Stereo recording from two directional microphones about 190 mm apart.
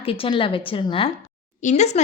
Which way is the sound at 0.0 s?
30° left (ahead or behind).